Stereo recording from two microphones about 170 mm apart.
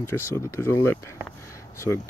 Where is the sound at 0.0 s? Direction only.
15° left (ahead or behind).